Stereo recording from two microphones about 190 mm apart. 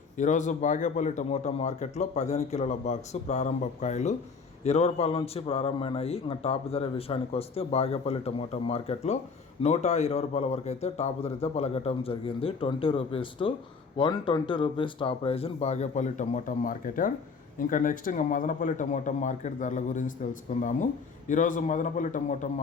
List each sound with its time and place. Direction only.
0.2 s a man's voice: 40° left (ahead or behind)